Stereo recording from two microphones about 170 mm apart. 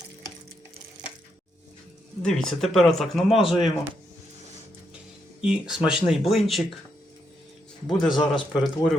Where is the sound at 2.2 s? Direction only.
5° left (ahead or behind).